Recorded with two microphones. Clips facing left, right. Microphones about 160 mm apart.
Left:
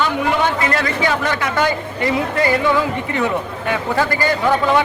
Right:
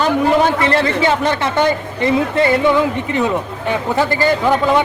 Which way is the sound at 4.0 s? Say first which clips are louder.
Right 3 dB; 25° right (ahead or behind).